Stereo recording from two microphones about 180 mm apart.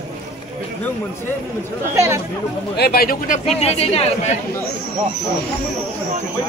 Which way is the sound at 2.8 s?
60° left (ahead or behind).